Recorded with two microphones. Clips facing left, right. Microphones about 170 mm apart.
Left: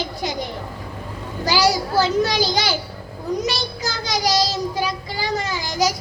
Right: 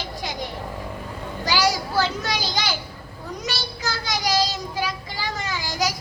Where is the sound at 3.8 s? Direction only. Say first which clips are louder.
Left 3 dB; 40° left (ahead or behind).